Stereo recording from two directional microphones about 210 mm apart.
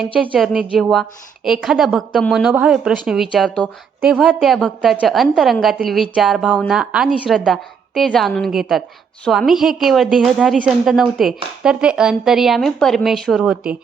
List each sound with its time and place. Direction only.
0.0 s a woman's voice: centre (ahead or behind)